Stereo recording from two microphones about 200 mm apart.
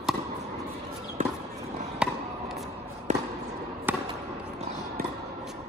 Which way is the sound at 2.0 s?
Centre (ahead or behind).